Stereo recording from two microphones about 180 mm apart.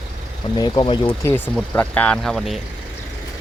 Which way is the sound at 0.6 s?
25° left (ahead or behind).